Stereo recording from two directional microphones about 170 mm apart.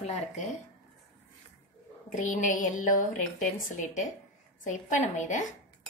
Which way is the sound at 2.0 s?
50° left (ahead or behind).